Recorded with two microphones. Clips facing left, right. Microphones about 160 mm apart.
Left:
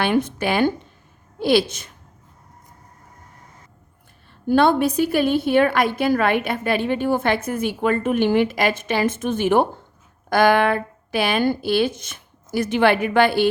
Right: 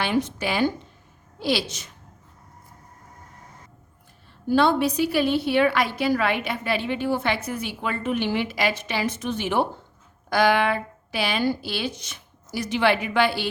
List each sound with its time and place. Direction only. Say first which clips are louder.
0.0 s speech: left 4 dB; 55° left (ahead or behind)
4.4 s a woman's voice: left 3 dB; 55° left (ahead or behind)